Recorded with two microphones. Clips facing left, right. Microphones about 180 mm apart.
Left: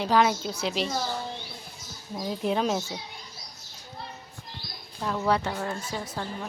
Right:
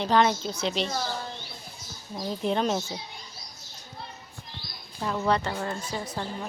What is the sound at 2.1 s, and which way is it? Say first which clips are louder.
Speech: even; 5° left (ahead or behind).